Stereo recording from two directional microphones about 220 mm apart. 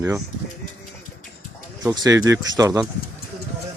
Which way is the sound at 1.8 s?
15° right (ahead or behind).